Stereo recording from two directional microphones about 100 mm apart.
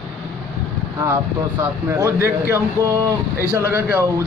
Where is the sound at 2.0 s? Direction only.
30° right (ahead or behind).